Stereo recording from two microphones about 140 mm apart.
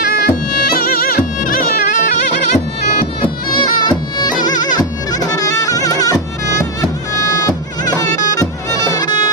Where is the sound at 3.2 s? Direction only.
35° left (ahead or behind).